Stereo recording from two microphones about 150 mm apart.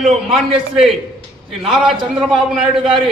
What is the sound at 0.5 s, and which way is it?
A man's voice, centre (ahead or behind).